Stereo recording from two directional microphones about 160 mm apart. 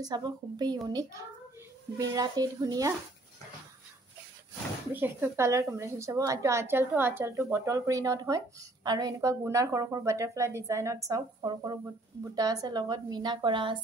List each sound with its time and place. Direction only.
0.0 s a woman's voice: 25° right (ahead or behind)
4.9 s a woman's voice: 15° right (ahead or behind); by 13.7 s 30° right (ahead or behind)